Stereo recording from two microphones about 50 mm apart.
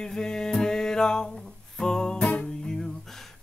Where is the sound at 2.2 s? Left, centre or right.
Left.